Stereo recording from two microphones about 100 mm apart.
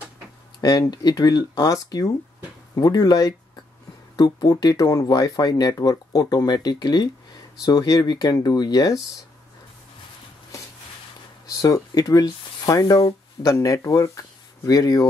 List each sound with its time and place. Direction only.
0.6 s speech: 45° left (ahead or behind)
11.5 s speech: 35° left (ahead or behind)